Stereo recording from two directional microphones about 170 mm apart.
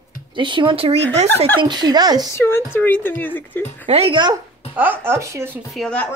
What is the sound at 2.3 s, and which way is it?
Speech, 15° left (ahead or behind).